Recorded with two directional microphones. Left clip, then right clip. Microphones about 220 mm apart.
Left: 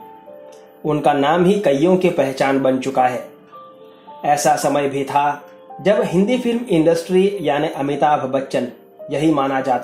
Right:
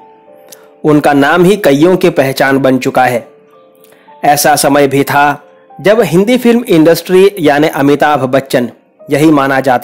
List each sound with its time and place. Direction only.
0.8 s speech: 45° right (ahead or behind)
4.2 s speech: 45° right (ahead or behind)